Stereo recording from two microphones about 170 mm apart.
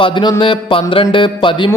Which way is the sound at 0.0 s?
25° left (ahead or behind).